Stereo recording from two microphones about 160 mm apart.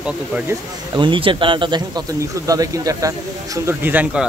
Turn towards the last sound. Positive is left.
turn(degrees=-5)  # may be behind; listen again after turning